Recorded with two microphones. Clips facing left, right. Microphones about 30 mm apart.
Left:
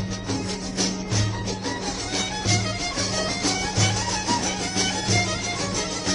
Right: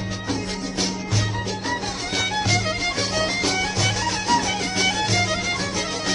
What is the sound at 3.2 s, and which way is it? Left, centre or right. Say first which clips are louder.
Music: right 4 dB; right.